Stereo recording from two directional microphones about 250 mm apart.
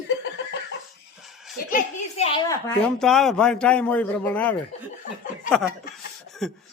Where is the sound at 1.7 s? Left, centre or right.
Left.